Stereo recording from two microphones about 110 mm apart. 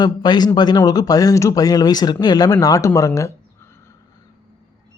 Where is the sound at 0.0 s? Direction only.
40° left (ahead or behind).